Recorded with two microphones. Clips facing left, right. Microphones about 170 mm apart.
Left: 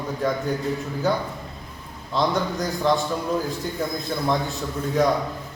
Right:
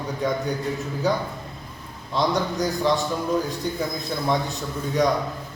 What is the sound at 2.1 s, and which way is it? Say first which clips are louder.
A man's voice: even; centre (ahead or behind).